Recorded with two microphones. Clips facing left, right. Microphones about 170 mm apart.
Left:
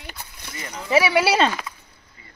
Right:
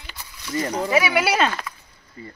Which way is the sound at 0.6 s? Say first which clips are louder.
Right 8 dB; 40° right (ahead or behind).